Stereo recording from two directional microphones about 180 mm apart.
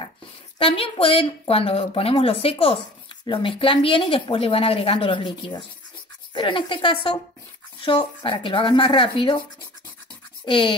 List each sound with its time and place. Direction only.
0.6 s a woman's voice: 30° left (ahead or behind)
10.4 s speech: 30° left (ahead or behind)